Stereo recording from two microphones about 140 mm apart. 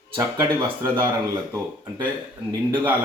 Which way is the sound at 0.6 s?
15° right (ahead or behind).